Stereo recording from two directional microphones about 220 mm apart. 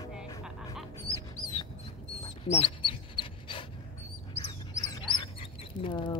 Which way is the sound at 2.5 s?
25° left (ahead or behind).